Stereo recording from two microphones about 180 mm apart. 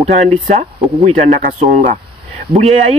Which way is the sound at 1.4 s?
45° right (ahead or behind).